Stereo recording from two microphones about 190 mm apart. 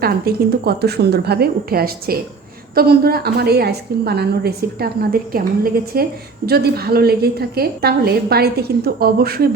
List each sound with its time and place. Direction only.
0.0 s a woman's voice: 55° right (ahead or behind)